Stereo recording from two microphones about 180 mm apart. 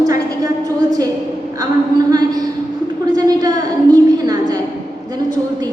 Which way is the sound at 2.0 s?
20° right (ahead or behind).